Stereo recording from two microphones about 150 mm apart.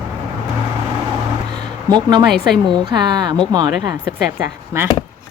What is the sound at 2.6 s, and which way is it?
Speech, 30° right (ahead or behind).